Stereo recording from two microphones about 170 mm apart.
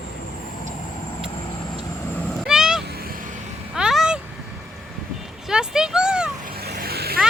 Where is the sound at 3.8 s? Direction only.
5° right (ahead or behind).